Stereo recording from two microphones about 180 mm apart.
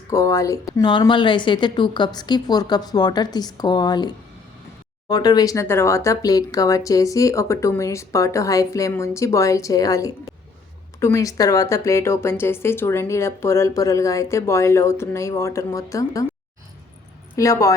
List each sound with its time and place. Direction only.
0.1 s a woman's voice: 15° left (ahead or behind)
17.3 s a woman's voice: 20° left (ahead or behind)